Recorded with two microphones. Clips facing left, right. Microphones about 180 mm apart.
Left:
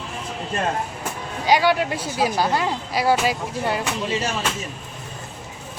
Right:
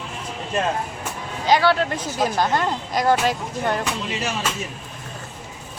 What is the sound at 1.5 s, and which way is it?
Speech, 10° left (ahead or behind).